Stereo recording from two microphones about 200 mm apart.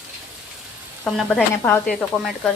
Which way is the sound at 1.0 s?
5° left (ahead or behind).